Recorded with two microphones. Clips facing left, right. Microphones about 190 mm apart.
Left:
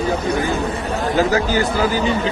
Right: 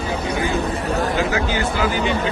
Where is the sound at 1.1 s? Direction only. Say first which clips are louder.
Left 4 dB; 40° left (ahead or behind).